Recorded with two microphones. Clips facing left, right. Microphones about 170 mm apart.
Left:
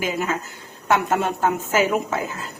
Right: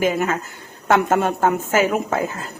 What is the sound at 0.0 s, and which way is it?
A woman's voice, 55° right (ahead or behind).